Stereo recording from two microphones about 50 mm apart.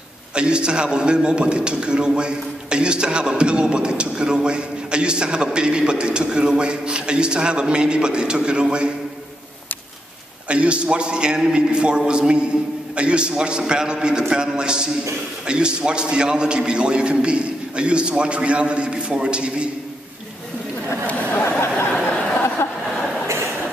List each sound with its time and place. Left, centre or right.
0.3 s a man's voice: centre
10.5 s a man's voice: right
21.4 s a sound: left